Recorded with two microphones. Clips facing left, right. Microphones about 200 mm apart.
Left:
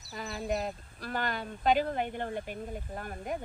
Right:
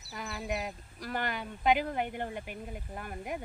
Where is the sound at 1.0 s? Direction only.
15° right (ahead or behind).